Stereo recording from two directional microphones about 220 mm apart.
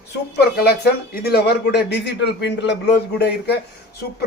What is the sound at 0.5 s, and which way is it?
A man's voice, 45° left (ahead or behind).